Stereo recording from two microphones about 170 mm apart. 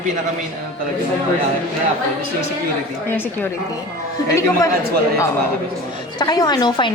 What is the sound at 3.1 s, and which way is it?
Speech, 10° left (ahead or behind).